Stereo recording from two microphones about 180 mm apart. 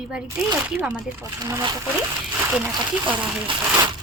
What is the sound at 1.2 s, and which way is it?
Speech, 20° right (ahead or behind).